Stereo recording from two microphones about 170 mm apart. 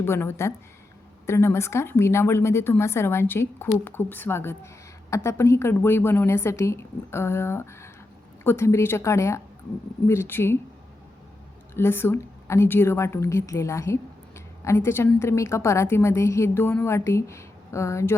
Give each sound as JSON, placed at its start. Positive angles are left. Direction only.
{"t": 0.0, "sound": "a woman's voice", "side_deg": 15}
{"t": 11.7, "sound": "a woman's voice", "side_deg": 15}